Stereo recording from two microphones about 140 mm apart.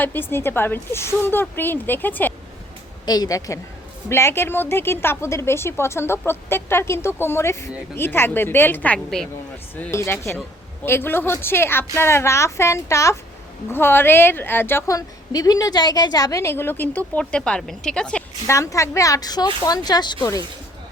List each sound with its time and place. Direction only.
0.0 s a woman's voice: 15° left (ahead or behind)
3.1 s a woman's voice: 25° left (ahead or behind); by 9.3 s 5° left (ahead or behind)
9.7 s a woman's voice: 15° left (ahead or behind)
18.4 s a woman's voice: 20° left (ahead or behind)